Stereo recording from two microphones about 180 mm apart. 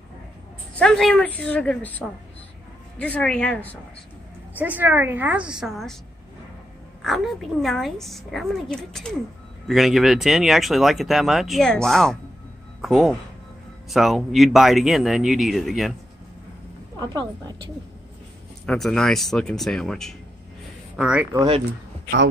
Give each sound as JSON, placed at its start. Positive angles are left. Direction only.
{"t": 0.7, "sound": "a woman's voice", "side_deg": 5}
{"t": 4.6, "sound": "a woman's voice", "side_deg": -10}
{"t": 7.0, "sound": "speech", "side_deg": 0}
{"t": 17.0, "sound": "a woman's voice", "side_deg": -20}
{"t": 18.7, "sound": "speech", "side_deg": 5}
{"t": 21.4, "sound": "speech", "side_deg": -30}